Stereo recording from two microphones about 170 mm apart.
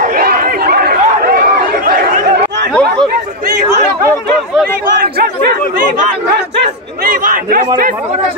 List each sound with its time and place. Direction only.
0.1 s chatter: 60° right (ahead or behind)
2.7 s chatter: 5° left (ahead or behind)
7.1 s a sound: 55° right (ahead or behind)